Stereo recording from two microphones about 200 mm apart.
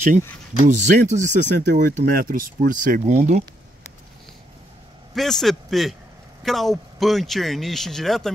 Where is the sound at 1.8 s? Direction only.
40° right (ahead or behind).